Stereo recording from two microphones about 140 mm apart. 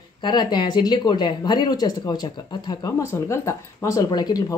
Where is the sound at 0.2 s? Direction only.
30° left (ahead or behind).